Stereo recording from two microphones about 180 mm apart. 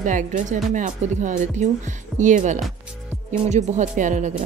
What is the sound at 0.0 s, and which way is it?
A woman's voice, 45° right (ahead or behind).